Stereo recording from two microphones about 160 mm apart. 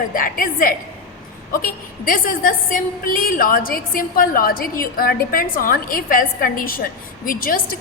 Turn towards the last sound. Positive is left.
turn(degrees=60)  # may be behind; listen again after turning